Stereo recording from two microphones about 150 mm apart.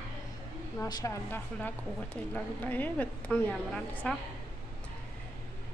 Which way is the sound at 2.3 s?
10° left (ahead or behind).